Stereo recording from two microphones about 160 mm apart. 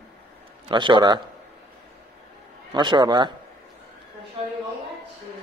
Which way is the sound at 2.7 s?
30° right (ahead or behind).